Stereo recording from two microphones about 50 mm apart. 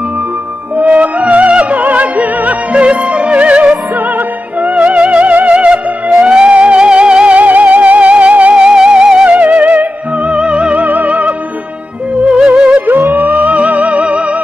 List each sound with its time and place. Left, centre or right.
0.7 s music: right
8.5 s music: centre
12.4 s music: right
13.1 s music: right